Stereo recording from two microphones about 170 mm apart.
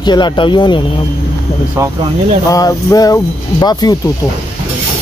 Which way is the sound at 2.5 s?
20° left (ahead or behind).